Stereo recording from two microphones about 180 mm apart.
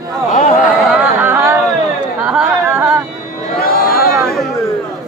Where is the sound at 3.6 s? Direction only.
55° left (ahead or behind).